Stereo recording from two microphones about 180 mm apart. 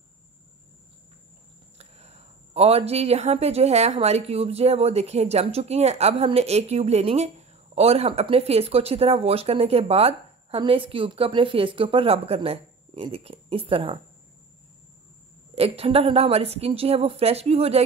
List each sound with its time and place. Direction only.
1.8 s speech: 35° right (ahead or behind)
15.5 s speech: 35° right (ahead or behind)